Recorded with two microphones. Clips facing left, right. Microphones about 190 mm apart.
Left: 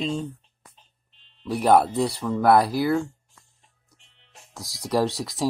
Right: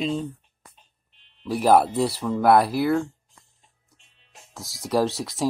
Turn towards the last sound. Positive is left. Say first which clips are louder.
# right 1 dB
turn(degrees=0)  # may be behind; listen again after turning